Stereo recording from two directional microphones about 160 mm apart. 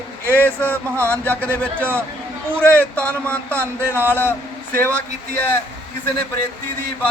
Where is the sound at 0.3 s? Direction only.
10° left (ahead or behind).